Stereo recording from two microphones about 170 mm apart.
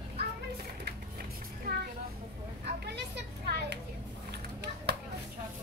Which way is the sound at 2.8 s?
75° right (ahead or behind).